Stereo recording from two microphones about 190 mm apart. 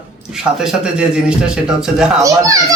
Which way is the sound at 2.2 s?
15° right (ahead or behind).